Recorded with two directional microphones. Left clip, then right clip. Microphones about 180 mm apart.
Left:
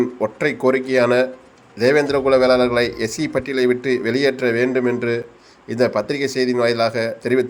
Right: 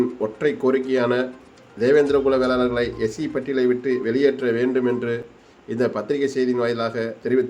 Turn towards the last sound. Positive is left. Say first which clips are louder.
# left 3 dB
turn(degrees=25)  # may be behind; listen again after turning